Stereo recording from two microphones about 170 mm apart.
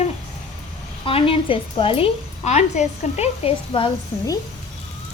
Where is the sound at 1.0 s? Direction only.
30° left (ahead or behind).